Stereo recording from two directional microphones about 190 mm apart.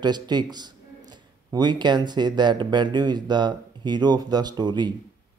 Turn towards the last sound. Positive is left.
turn(degrees=-20)  # may be behind; listen again after turning